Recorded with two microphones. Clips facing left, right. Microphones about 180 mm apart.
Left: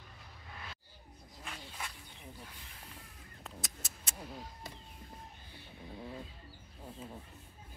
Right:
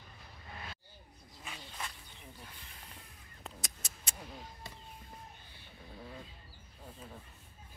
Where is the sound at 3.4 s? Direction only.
Centre (ahead or behind).